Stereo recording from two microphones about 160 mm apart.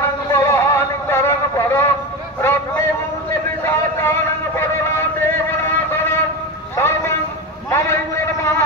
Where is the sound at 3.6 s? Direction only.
15° left (ahead or behind).